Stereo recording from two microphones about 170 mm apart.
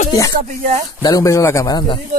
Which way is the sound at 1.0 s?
20° left (ahead or behind).